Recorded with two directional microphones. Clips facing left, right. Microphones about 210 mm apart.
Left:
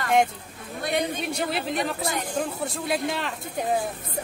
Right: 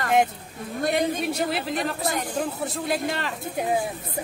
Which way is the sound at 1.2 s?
Centre (ahead or behind).